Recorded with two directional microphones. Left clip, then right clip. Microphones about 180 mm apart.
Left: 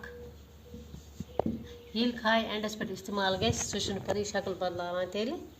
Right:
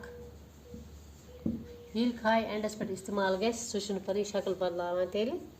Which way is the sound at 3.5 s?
50° right (ahead or behind).